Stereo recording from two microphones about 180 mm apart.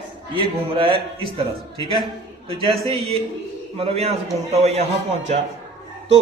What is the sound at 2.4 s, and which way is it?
A man's voice, 30° right (ahead or behind).